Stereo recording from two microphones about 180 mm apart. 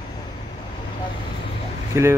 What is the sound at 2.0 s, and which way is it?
Speech, 15° right (ahead or behind).